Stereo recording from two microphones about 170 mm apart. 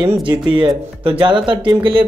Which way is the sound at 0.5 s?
30° right (ahead or behind).